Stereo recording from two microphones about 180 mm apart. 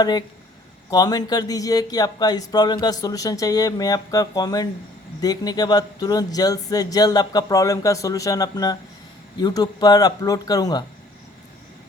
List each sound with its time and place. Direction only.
0.0 s speech: 20° left (ahead or behind)